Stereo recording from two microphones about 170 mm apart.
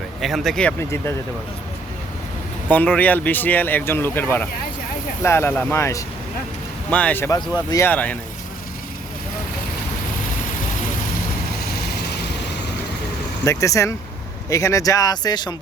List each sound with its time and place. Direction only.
0.2 s speech: centre (ahead or behind)
0.8 s speech: 15° left (ahead or behind)
2.6 s speech: 10° left (ahead or behind)
11.7 s vehicle: 70° left (ahead or behind)
13.4 s speech: 20° left (ahead or behind)